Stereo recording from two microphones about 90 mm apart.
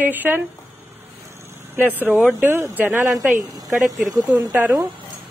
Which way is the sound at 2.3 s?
25° right (ahead or behind).